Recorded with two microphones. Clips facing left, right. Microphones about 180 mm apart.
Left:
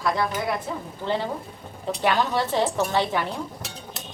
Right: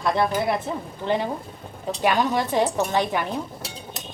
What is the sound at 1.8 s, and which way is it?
A woman's voice, 15° right (ahead or behind).